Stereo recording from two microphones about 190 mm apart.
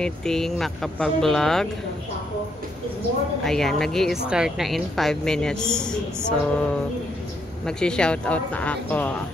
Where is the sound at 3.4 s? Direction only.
Centre (ahead or behind).